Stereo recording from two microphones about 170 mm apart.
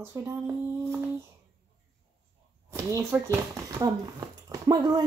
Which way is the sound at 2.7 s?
15° right (ahead or behind).